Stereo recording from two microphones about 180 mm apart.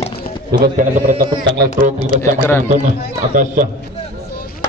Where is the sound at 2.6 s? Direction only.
45° right (ahead or behind).